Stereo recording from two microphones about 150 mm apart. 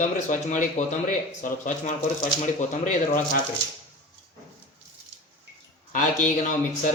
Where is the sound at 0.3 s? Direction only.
55° left (ahead or behind).